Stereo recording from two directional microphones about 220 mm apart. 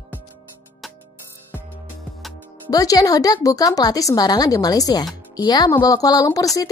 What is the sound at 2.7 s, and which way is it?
A woman's voice, 15° left (ahead or behind).